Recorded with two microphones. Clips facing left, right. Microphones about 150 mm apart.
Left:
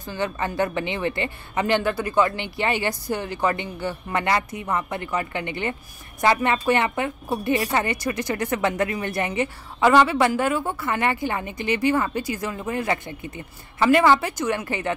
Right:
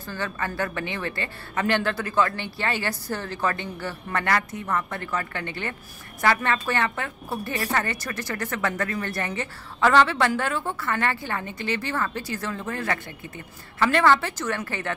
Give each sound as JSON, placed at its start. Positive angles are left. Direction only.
{"t": 0.1, "sound": "speech", "side_deg": 20}